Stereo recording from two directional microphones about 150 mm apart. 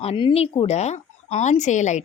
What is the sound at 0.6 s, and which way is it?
A woman's voice, 45° left (ahead or behind).